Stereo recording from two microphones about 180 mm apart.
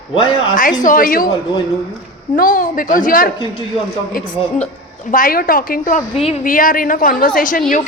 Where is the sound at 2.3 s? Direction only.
50° left (ahead or behind).